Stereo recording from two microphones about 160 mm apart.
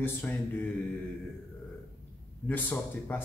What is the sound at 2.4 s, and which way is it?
Speech, 10° left (ahead or behind).